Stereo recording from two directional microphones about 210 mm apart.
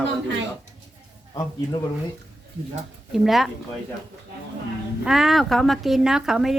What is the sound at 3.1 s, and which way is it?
Speech, centre (ahead or behind).